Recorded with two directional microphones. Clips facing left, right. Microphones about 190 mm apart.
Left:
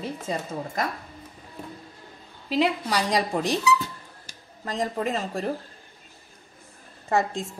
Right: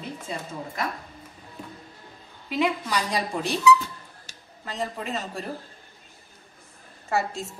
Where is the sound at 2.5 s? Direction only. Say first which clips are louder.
Left 2 dB; 30° left (ahead or behind).